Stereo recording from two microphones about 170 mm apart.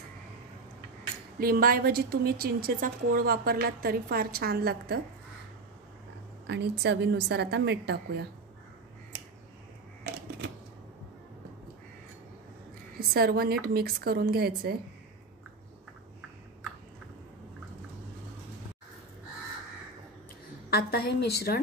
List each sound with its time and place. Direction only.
1.4 s a woman's voice: 60° right (ahead or behind)
6.4 s a woman's voice: 85° right
13.1 s a woman's voice: 65° right (ahead or behind)
20.7 s a woman's voice: 70° left (ahead or behind)